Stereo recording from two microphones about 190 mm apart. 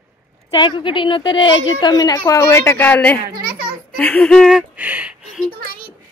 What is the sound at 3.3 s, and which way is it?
Speech, 50° right (ahead or behind).